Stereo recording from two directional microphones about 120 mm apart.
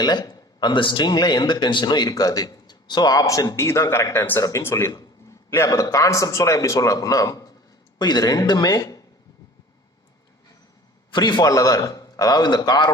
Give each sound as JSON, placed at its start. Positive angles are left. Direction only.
{"t": 0.0, "sound": "a man's voice", "side_deg": 35}
{"t": 11.1, "sound": "a man's voice", "side_deg": 35}